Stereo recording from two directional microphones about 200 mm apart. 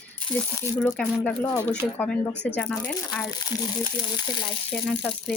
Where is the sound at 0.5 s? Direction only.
10° left (ahead or behind).